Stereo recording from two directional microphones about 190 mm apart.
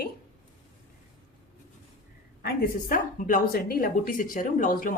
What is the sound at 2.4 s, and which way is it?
A woman's voice, 50° left (ahead or behind).